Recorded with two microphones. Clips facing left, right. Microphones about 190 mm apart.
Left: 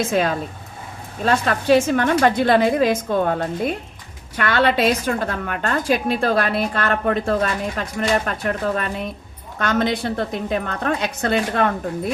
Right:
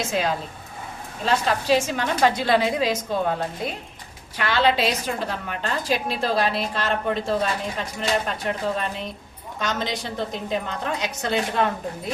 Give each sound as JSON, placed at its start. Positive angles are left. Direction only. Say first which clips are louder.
{"t": 0.1, "sound": "a woman's voice", "louder": "left 4 dB", "side_deg": 55}
{"t": 4.4, "sound": "a woman's voice", "louder": "left 3 dB", "side_deg": 55}